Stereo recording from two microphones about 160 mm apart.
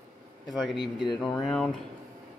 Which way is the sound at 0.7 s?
30° left (ahead or behind).